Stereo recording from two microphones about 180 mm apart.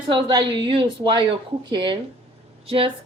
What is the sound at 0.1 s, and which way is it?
A woman's voice, 25° right (ahead or behind).